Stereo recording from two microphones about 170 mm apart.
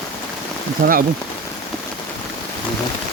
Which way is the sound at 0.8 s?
60° right (ahead or behind).